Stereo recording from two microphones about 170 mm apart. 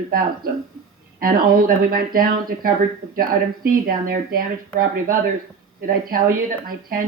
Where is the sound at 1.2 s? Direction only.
55° right (ahead or behind).